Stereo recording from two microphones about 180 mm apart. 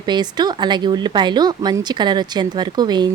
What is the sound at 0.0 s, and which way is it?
Speech, 25° right (ahead or behind).